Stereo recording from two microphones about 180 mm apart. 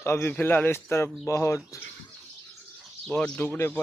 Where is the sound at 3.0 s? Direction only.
5° left (ahead or behind).